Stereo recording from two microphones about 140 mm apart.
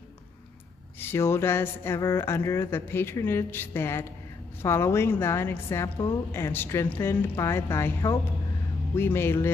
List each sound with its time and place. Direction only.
0.9 s a woman's voice: 15° left (ahead or behind)